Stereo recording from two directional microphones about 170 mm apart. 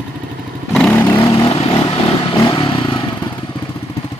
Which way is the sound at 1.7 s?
30° left (ahead or behind).